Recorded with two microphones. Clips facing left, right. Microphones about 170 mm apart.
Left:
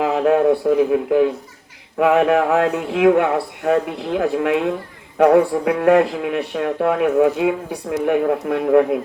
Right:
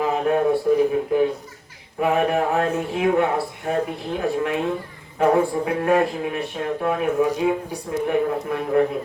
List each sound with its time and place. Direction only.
0.0 s speech: 70° left (ahead or behind)